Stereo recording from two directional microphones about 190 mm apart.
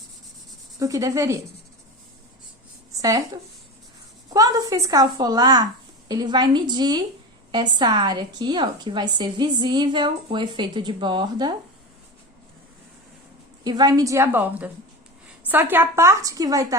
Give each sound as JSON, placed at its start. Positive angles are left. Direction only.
{"t": 0.8, "sound": "a woman's voice", "side_deg": -15}
{"t": 3.0, "sound": "speech", "side_deg": -20}
{"t": 4.3, "sound": "a woman's voice", "side_deg": -20}
{"t": 13.7, "sound": "a woman's voice", "side_deg": -20}
{"t": 15.7, "sound": "a woman's voice", "side_deg": -10}